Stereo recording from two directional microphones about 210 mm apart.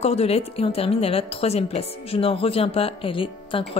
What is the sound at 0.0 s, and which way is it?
A woman's voice, 30° left (ahead or behind).